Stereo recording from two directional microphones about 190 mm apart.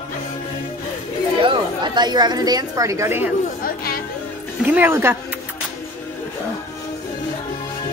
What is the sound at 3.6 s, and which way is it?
Speech, 50° left (ahead or behind).